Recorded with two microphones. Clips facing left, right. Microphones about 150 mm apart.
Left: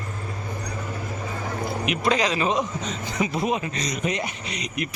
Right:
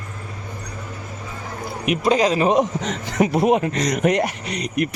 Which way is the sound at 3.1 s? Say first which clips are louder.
Right 8 dB; 60° right (ahead or behind).